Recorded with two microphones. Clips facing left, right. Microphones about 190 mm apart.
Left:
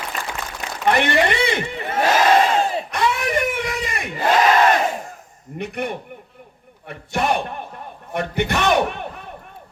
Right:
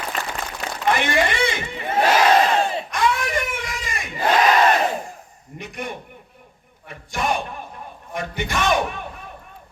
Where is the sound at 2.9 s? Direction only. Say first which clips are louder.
Even; 65° left (ahead or behind).